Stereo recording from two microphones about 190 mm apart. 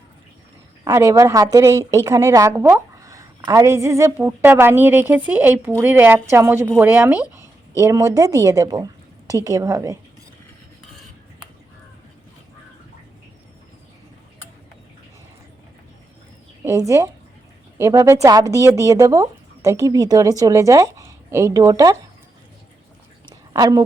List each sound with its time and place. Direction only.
0.9 s a woman's voice: 15° right (ahead or behind)
16.6 s a woman's voice: 15° right (ahead or behind)
23.6 s a woman's voice: 20° right (ahead or behind)